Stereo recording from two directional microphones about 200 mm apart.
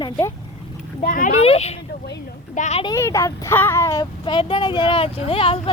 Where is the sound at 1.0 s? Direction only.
40° left (ahead or behind).